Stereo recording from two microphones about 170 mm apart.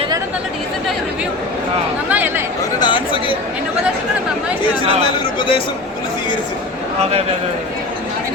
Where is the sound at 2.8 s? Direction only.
30° left (ahead or behind).